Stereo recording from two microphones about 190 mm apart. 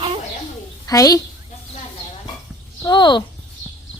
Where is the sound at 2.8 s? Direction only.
25° left (ahead or behind).